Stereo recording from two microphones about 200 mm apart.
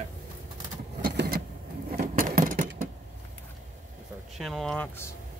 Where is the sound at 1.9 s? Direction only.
50° right (ahead or behind).